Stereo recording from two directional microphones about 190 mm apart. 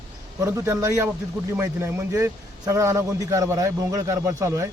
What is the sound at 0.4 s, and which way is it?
A man's voice, 15° right (ahead or behind).